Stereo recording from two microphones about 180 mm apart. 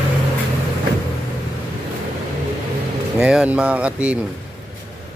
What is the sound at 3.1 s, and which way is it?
Speech, 5° right (ahead or behind).